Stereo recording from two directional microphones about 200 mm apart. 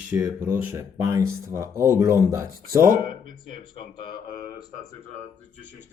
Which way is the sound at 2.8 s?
45° right (ahead or behind).